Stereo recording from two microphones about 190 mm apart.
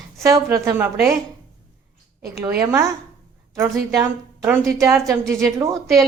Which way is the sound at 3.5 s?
15° right (ahead or behind).